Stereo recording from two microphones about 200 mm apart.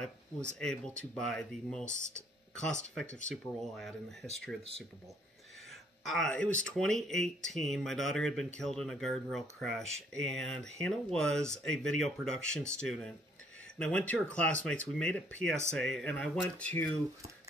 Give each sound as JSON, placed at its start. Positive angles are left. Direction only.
{"t": 0.0, "sound": "speech", "side_deg": 5}
{"t": 1.9, "sound": "speech", "side_deg": 40}
{"t": 2.5, "sound": "speech", "side_deg": 5}
{"t": 5.7, "sound": "speech", "side_deg": 0}